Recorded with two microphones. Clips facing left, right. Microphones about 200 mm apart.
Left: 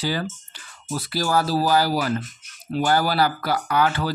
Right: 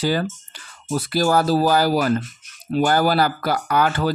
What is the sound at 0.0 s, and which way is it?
Speech, 50° right (ahead or behind).